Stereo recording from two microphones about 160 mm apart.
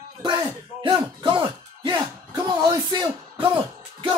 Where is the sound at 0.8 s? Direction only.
30° right (ahead or behind).